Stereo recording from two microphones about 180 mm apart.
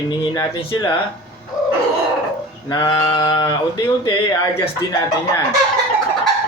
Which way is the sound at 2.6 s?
25° left (ahead or behind).